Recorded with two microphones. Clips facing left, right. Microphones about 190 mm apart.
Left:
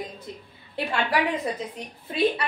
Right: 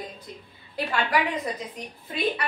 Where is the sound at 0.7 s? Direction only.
25° left (ahead or behind).